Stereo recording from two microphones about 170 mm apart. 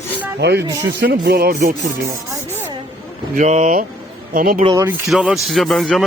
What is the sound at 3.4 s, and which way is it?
Speech, 45° right (ahead or behind).